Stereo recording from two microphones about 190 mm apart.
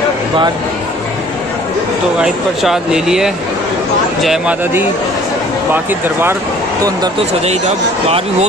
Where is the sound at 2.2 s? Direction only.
Centre (ahead or behind).